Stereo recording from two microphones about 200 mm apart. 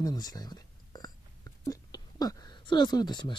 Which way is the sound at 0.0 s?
20° left (ahead or behind).